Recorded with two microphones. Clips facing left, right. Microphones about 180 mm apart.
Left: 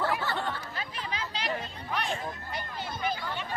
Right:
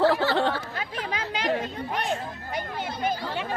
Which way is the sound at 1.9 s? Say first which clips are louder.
Right 1 dB; 45° right (ahead or behind).